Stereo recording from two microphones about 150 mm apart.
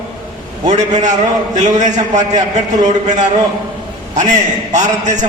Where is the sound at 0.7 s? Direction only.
50° right (ahead or behind).